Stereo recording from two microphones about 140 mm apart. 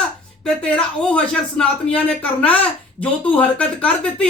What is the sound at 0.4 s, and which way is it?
Speech, 5° left (ahead or behind).